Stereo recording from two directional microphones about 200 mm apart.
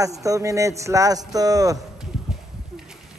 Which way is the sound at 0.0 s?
15° right (ahead or behind).